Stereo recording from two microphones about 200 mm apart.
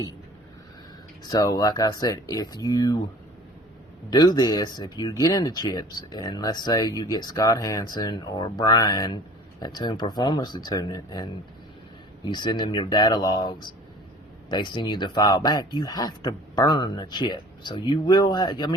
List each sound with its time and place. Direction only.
1.2 s speech: 20° left (ahead or behind)
4.1 s speech: 20° left (ahead or behind)